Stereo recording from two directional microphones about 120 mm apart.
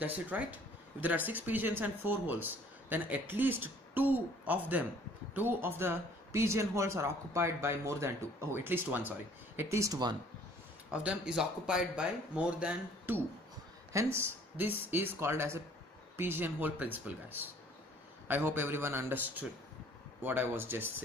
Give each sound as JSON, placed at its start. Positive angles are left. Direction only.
{"t": 0.0, "sound": "speech", "side_deg": -15}
{"t": 10.9, "sound": "speech", "side_deg": -10}